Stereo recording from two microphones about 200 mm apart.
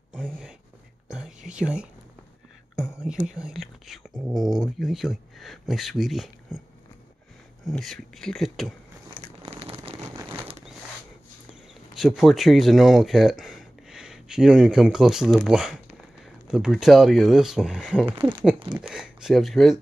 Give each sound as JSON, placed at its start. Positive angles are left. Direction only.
{"t": 0.1, "sound": "a sound", "side_deg": 0}
{"t": 1.1, "sound": "whispering", "side_deg": -5}
{"t": 2.7, "sound": "speech", "side_deg": -5}
{"t": 7.6, "sound": "speech", "side_deg": 0}
{"t": 9.4, "sound": "a sound", "side_deg": -30}
{"t": 10.1, "sound": "a sound", "side_deg": -10}
{"t": 11.9, "sound": "speech", "side_deg": 0}
{"t": 18.0, "sound": "speech", "side_deg": -25}
{"t": 18.8, "sound": "speech", "side_deg": -5}